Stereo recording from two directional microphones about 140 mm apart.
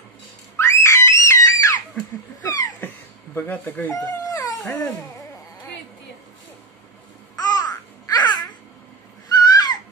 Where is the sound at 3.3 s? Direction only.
15° left (ahead or behind).